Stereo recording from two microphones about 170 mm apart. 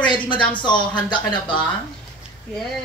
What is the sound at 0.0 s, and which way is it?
Speech, 30° left (ahead or behind).